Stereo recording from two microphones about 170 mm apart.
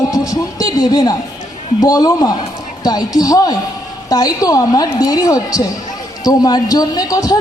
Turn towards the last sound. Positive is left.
turn(degrees=20)  # may be behind; listen again after turning